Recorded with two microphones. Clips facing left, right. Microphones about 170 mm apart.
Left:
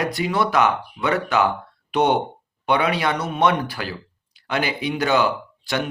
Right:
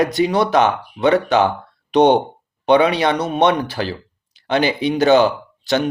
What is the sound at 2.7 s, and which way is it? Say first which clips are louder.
Speech: right 6 dB; 25° right (ahead or behind).